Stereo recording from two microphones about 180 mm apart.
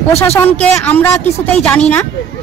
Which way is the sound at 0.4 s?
10° left (ahead or behind).